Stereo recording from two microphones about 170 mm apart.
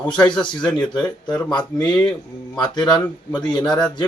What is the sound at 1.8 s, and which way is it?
Speech, 5° left (ahead or behind).